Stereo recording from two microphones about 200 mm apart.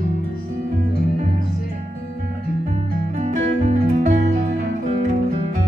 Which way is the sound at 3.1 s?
35° right (ahead or behind).